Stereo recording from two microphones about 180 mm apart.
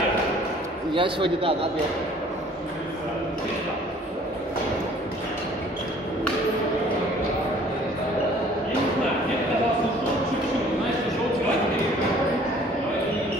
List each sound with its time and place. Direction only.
0.9 s speech: 30° right (ahead or behind)